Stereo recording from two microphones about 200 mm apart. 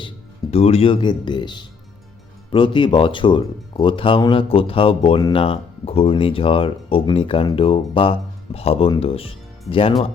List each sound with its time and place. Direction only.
0.5 s speech: 30° left (ahead or behind)